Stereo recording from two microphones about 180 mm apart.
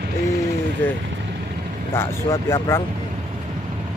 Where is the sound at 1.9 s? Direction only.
15° left (ahead or behind).